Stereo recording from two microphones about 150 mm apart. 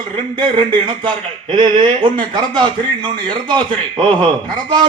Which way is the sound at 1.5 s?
30° right (ahead or behind).